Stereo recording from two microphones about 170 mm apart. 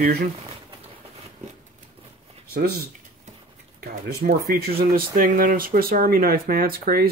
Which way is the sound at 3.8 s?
55° right (ahead or behind).